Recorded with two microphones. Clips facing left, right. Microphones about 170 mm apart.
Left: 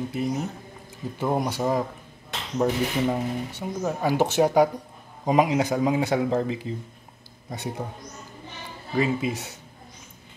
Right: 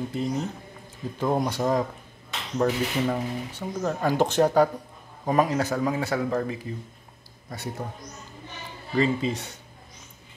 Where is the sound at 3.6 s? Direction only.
10° left (ahead or behind).